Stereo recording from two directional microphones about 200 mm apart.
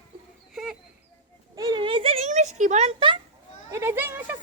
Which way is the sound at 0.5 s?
Centre (ahead or behind).